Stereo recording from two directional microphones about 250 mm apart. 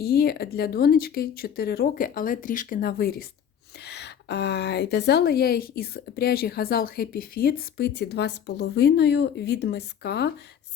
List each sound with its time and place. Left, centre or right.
0.0 s a woman's voice: left